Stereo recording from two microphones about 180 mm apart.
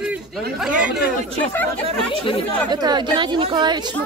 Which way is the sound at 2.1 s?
30° left (ahead or behind).